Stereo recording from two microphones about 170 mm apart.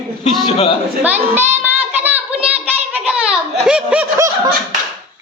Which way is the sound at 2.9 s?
5° right (ahead or behind).